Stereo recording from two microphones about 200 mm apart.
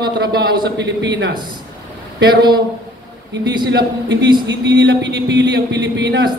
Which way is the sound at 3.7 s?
60° right (ahead or behind).